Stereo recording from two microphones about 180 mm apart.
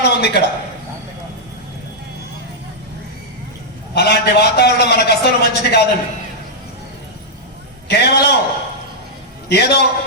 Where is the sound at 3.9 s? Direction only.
65° left (ahead or behind).